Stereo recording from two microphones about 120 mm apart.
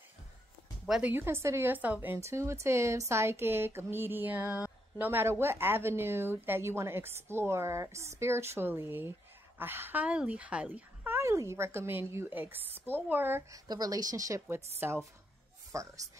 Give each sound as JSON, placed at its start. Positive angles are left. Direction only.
{"t": 0.8, "sound": "a woman's voice", "side_deg": -5}
{"t": 1.1, "sound": "a woman's voice", "side_deg": -20}
{"t": 13.5, "sound": "a woman's voice", "side_deg": -30}
{"t": 14.8, "sound": "a woman's voice", "side_deg": -15}